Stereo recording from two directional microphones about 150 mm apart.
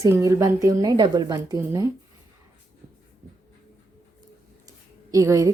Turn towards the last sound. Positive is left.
turn(degrees=-20)  # may be behind; listen again after turning